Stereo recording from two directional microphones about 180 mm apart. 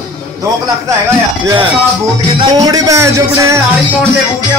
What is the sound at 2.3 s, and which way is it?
A man's voice, 20° right (ahead or behind).